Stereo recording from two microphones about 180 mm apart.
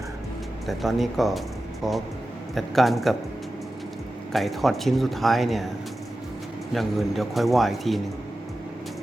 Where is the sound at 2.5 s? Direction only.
Centre (ahead or behind).